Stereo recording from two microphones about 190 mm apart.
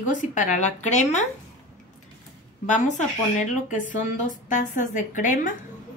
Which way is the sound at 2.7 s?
40° left (ahead or behind).